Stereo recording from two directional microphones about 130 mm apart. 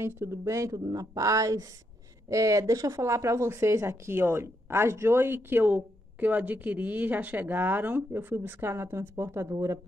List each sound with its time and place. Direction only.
0.0 s speech: 20° right (ahead or behind)